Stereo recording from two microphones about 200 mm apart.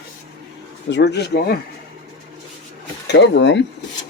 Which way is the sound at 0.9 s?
60° left (ahead or behind).